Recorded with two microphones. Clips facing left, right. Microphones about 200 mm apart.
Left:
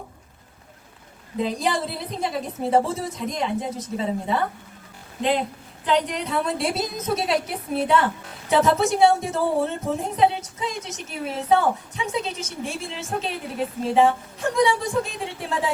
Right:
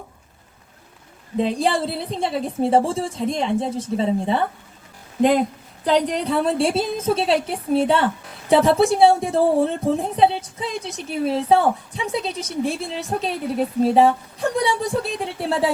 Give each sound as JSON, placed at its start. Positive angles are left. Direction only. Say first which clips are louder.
{"t": 1.4, "sound": "a woman's voice", "louder": "right 4 dB", "side_deg": -30}
{"t": 5.2, "sound": "a woman's voice", "louder": "right 6 dB", "side_deg": -45}